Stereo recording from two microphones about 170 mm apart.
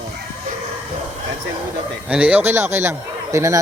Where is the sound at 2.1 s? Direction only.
10° right (ahead or behind).